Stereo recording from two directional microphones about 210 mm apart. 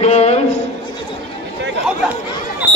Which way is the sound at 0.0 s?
30° left (ahead or behind).